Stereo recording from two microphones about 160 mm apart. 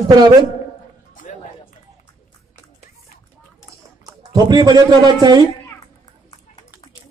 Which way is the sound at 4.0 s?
25° right (ahead or behind).